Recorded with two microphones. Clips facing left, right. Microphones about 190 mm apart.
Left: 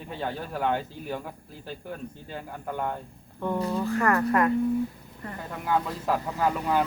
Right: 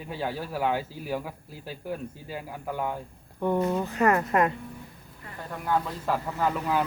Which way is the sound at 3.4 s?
15° right (ahead or behind).